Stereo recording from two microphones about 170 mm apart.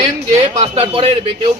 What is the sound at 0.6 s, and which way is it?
Speech, 30° right (ahead or behind).